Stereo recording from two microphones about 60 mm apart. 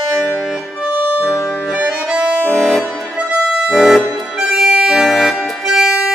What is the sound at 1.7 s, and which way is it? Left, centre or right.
Accordion, centre.